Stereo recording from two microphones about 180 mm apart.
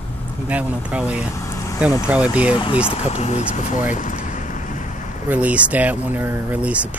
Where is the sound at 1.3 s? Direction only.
15° left (ahead or behind).